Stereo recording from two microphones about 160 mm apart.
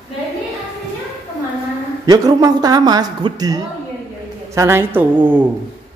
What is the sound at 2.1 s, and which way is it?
A woman's voice, 25° right (ahead or behind).